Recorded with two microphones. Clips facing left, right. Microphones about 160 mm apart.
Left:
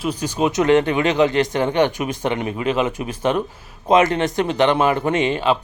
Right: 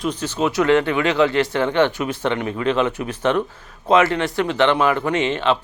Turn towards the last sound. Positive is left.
turn(degrees=10)  # may be behind; listen again after turning